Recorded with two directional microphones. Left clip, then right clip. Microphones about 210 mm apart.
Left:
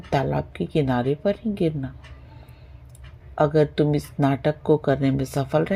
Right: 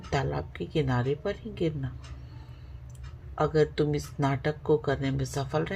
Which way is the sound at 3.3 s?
40° left (ahead or behind).